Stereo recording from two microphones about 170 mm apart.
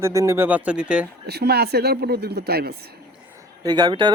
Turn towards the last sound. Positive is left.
turn(degrees=-25)  # may be behind; listen again after turning